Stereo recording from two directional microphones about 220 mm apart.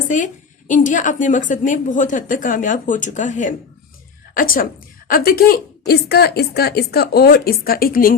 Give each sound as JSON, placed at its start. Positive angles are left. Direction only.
{"t": 0.7, "sound": "a woman's voice", "side_deg": 35}